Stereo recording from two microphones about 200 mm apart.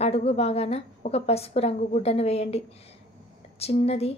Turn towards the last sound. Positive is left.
turn(degrees=30)  # may be behind; listen again after turning